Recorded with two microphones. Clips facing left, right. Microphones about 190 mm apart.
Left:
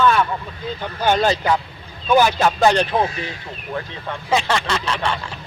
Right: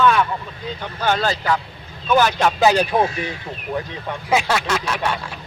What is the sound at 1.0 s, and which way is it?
Speech, 15° left (ahead or behind).